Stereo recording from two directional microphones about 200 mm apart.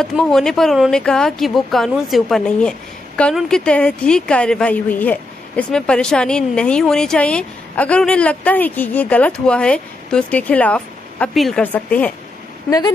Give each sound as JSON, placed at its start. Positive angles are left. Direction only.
{"t": 0.0, "sound": "a woman's voice", "side_deg": 0}
{"t": 12.6, "sound": "speech", "side_deg": 20}